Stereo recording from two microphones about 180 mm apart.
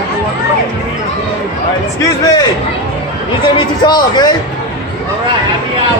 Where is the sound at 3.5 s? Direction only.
25° left (ahead or behind).